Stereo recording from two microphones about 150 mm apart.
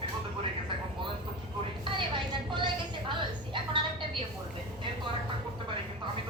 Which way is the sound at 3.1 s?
35° right (ahead or behind).